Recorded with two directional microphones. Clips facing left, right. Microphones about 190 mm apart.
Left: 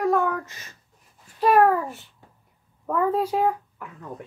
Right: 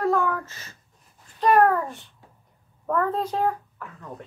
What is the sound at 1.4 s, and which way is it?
A child's voice, 5° left (ahead or behind).